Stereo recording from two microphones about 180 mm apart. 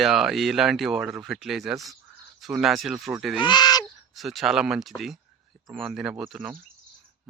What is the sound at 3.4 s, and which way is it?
Speech, 25° left (ahead or behind).